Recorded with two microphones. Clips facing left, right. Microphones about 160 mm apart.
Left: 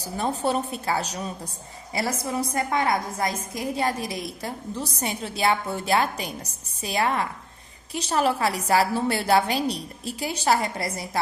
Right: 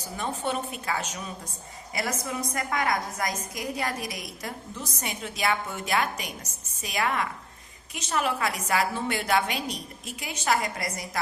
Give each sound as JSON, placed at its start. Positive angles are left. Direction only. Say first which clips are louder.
{"t": 0.0, "sound": "a woman's voice", "louder": "left 5 dB", "side_deg": 35}